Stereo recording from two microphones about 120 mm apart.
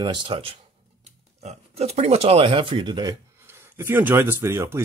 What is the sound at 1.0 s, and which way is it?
Speech, 65° right (ahead or behind).